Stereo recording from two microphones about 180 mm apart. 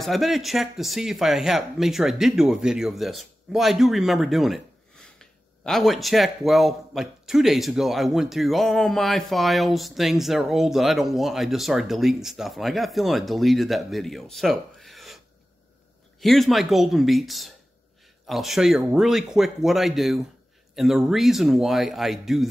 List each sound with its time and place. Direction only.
0.0 s speech: centre (ahead or behind)
16.2 s speech: centre (ahead or behind)